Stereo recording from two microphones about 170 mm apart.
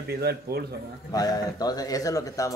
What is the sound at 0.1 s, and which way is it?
Speech, 70° right (ahead or behind).